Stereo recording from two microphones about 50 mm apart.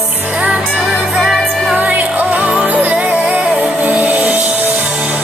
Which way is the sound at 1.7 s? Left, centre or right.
Right.